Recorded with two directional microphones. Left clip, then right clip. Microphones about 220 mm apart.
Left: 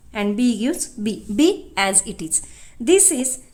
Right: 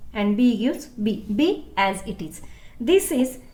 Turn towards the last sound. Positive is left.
turn(degrees=50)  # may be behind; listen again after turning